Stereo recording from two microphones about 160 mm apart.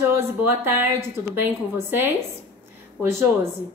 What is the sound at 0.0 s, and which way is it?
A woman's voice, 15° right (ahead or behind).